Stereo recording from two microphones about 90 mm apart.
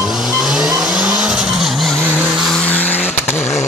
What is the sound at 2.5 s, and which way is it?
Vehicle, 15° left (ahead or behind).